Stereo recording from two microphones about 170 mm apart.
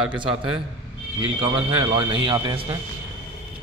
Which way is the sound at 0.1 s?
30° right (ahead or behind).